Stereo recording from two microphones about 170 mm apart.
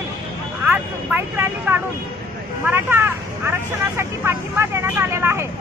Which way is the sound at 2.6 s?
15° right (ahead or behind).